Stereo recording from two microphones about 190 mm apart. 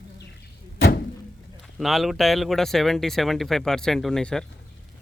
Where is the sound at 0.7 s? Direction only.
60° left (ahead or behind).